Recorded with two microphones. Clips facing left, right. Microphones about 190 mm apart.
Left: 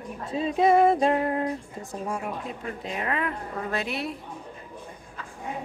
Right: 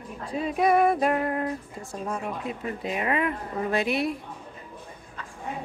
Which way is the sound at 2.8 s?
15° right (ahead or behind).